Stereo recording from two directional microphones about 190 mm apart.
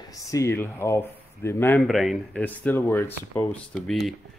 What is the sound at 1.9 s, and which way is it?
Speech, centre (ahead or behind).